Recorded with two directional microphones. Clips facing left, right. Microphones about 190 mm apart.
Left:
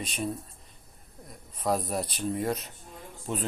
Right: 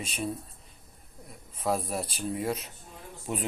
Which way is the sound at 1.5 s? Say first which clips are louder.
Left 1 dB; 5° right (ahead or behind).